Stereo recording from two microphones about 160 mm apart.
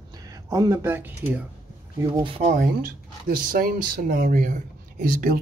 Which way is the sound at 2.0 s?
25° right (ahead or behind).